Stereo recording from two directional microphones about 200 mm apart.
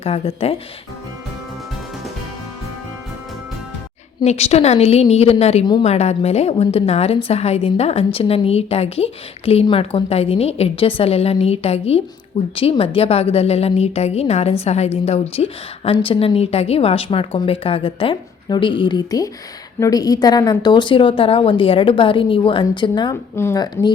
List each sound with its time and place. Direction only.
0.0 s a woman's voice: 30° left (ahead or behind)
4.2 s a woman's voice: 30° left (ahead or behind)
23.3 s speech: 15° left (ahead or behind)